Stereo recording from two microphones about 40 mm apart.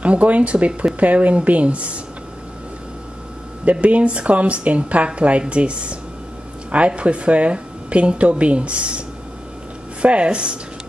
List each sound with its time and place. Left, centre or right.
0.0 s speech: right
3.8 s speech: right
10.0 s speech: right